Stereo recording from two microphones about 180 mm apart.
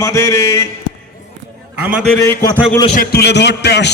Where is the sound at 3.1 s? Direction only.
65° left (ahead or behind).